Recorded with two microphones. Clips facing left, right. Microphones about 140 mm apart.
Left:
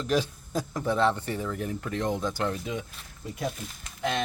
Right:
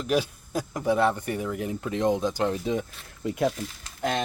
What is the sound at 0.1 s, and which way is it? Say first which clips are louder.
Speech: right 2 dB; 10° right (ahead or behind).